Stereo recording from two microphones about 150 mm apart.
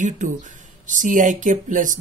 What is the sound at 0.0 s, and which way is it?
Speech, 55° right (ahead or behind).